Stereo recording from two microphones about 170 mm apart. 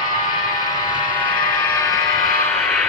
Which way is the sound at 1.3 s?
25° left (ahead or behind).